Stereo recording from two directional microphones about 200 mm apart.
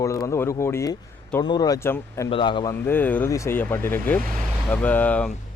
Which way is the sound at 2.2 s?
25° left (ahead or behind).